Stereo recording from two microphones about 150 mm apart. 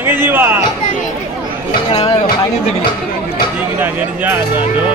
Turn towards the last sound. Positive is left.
turn(degrees=-15)  # may be behind; listen again after turning